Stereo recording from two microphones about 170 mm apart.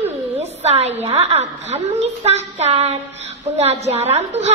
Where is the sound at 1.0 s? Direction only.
40° right (ahead or behind).